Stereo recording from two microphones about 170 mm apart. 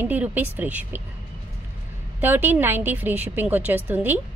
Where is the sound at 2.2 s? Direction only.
10° right (ahead or behind).